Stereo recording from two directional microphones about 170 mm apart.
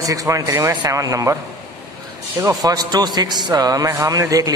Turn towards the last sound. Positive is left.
turn(degrees=-20)  # may be behind; listen again after turning